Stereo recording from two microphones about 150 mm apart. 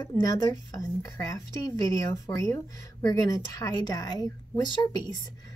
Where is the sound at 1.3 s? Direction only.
25° left (ahead or behind).